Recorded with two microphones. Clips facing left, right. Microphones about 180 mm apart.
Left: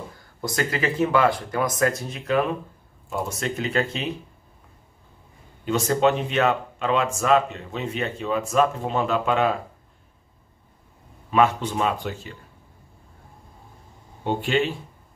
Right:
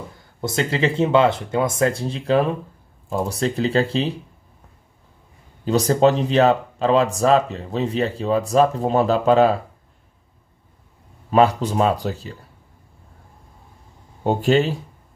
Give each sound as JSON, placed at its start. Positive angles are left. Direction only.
{"t": 0.4, "sound": "speech", "side_deg": -25}
{"t": 5.7, "sound": "speech", "side_deg": -35}
{"t": 11.2, "sound": "speech", "side_deg": -35}
{"t": 14.2, "sound": "speech", "side_deg": -40}